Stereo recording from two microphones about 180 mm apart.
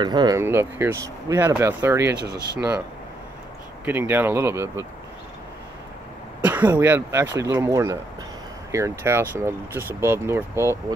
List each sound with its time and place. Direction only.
0.0 s speech: 25° right (ahead or behind)
3.8 s speech: 10° right (ahead or behind)
6.4 s speech: 10° right (ahead or behind)